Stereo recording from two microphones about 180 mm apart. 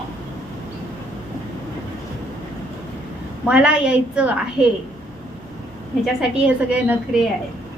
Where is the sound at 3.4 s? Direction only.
5° right (ahead or behind).